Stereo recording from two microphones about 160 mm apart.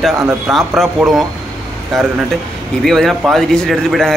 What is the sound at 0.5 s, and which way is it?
A man's voice, centre (ahead or behind).